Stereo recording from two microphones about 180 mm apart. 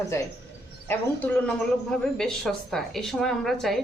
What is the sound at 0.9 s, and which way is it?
A woman's voice, 5° left (ahead or behind).